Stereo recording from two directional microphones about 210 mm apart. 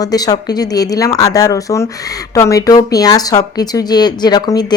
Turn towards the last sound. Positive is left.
turn(degrees=20)  # may be behind; listen again after turning